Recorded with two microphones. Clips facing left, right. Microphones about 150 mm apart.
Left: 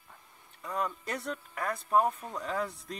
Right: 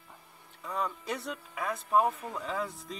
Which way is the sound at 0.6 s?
Centre (ahead or behind).